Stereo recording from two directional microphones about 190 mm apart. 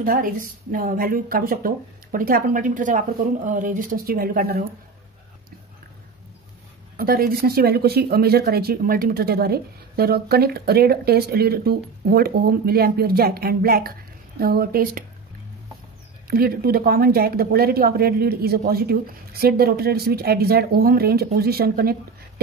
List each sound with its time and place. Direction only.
0.0 s speech: 50° right (ahead or behind)
7.0 s speech: 50° right (ahead or behind)
16.3 s speech: 50° right (ahead or behind)